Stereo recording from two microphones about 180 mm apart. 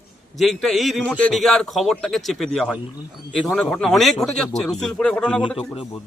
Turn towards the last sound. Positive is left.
turn(degrees=5)  # may be behind; listen again after turning